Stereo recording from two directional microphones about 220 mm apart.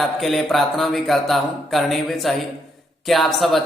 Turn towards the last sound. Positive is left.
turn(degrees=0)  # may be behind; listen again after turning